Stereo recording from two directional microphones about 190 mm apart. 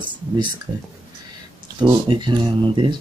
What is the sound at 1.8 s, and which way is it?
Speech, 25° right (ahead or behind).